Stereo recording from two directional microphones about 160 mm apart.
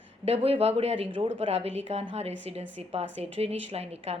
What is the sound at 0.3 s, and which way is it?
Speech, 40° right (ahead or behind).